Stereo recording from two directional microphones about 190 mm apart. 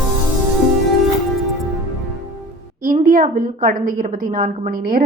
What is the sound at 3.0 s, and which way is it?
A woman's voice, 45° right (ahead or behind).